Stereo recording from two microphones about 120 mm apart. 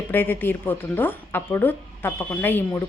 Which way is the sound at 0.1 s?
15° left (ahead or behind).